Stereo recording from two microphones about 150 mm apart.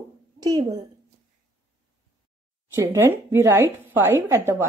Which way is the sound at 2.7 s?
20° right (ahead or behind).